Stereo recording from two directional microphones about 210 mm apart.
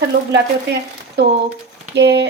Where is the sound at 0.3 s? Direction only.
55° right (ahead or behind).